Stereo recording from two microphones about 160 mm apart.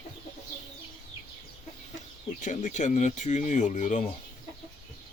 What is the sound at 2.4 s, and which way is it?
Speech, 50° left (ahead or behind).